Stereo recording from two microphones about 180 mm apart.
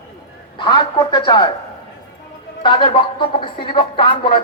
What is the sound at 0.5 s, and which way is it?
Speech, 25° left (ahead or behind).